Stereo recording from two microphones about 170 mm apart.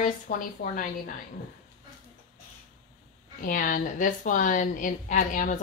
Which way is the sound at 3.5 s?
50° left (ahead or behind).